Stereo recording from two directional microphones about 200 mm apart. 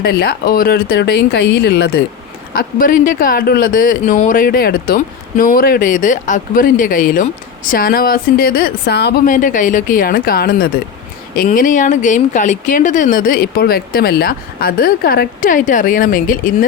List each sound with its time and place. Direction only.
0.0 s speech: 50° left (ahead or behind)